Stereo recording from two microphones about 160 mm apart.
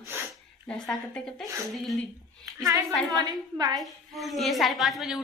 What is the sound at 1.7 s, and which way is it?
Speech, centre (ahead or behind).